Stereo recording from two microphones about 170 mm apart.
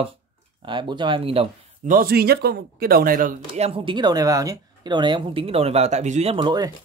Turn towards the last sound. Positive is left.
turn(degrees=-25)  # may be behind; listen again after turning